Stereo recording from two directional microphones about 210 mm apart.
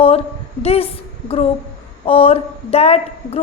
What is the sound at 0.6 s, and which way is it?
A woman's voice, 30° left (ahead or behind).